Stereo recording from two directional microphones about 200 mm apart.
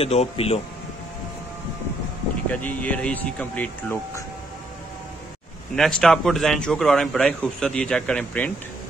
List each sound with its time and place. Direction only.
0.0 s speech: 30° left (ahead or behind)
2.5 s speech: 5° left (ahead or behind)
5.8 s a man's voice: centre (ahead or behind)